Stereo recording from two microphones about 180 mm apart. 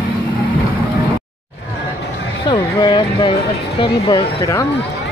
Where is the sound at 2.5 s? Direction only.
25° left (ahead or behind).